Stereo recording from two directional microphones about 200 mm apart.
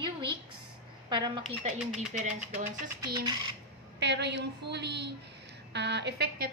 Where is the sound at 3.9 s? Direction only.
60° right (ahead or behind).